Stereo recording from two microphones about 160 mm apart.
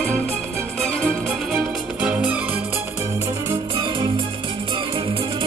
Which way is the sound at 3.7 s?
30° right (ahead or behind).